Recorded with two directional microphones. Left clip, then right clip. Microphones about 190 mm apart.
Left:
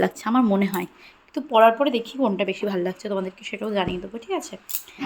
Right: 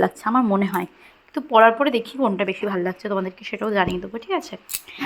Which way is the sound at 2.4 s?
10° left (ahead or behind).